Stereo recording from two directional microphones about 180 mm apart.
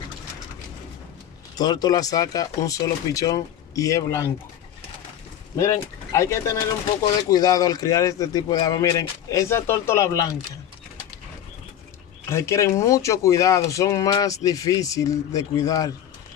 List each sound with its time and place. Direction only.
1.6 s speech: 20° left (ahead or behind)
5.6 s speech: 15° left (ahead or behind)
12.3 s speech: 15° left (ahead or behind)